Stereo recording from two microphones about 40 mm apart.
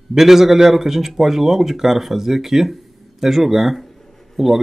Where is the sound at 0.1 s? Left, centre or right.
Centre.